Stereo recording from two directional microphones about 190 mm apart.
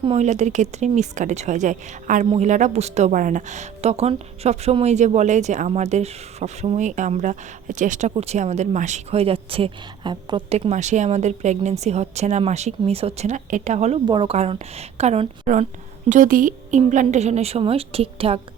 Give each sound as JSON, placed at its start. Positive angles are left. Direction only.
{"t": 0.0, "sound": "a woman's voice", "side_deg": -35}
{"t": 10.7, "sound": "a woman's voice", "side_deg": -40}